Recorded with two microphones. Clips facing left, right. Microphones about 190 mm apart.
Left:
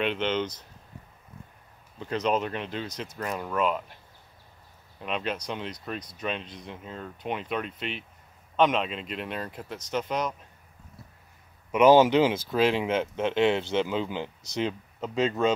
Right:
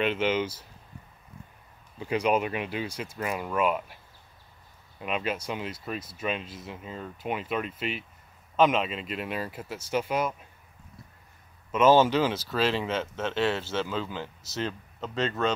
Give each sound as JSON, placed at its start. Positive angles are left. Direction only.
{"t": 0.0, "sound": "speech", "side_deg": -5}
{"t": 2.0, "sound": "speech", "side_deg": -10}
{"t": 5.0, "sound": "speech", "side_deg": -5}
{"t": 11.7, "sound": "speech", "side_deg": 15}